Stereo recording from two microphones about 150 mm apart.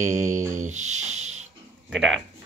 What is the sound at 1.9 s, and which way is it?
Speech, 5° left (ahead or behind).